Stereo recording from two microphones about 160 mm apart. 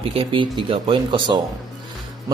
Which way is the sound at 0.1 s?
35° right (ahead or behind).